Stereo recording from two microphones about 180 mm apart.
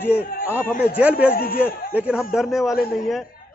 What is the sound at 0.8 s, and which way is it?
Speech, 10° right (ahead or behind).